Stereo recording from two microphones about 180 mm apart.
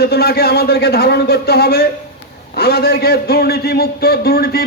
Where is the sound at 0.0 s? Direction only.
60° left (ahead or behind).